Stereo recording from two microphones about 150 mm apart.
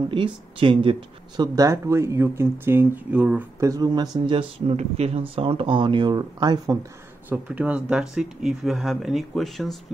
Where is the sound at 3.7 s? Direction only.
25° right (ahead or behind).